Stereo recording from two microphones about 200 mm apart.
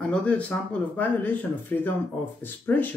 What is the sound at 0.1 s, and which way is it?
Speech, 5° left (ahead or behind).